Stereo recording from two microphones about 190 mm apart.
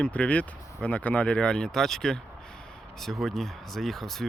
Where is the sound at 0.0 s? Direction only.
5° left (ahead or behind).